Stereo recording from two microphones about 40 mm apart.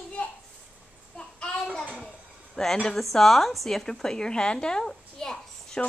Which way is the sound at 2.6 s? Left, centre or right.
Centre.